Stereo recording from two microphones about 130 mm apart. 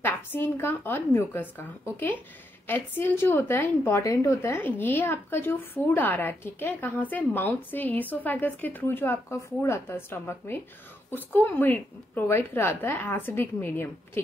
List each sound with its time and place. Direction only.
0.0 s a woman's voice: 15° left (ahead or behind)